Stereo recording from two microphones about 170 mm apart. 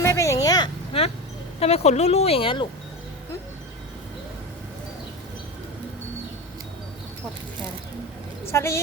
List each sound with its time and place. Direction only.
0.0 s vehicle: 15° left (ahead or behind)
0.9 s speech: 35° left (ahead or behind)
8.4 s a woman's voice: 15° left (ahead or behind)